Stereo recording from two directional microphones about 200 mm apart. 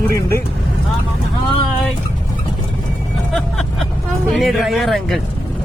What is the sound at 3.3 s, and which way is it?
Vehicle, centre (ahead or behind).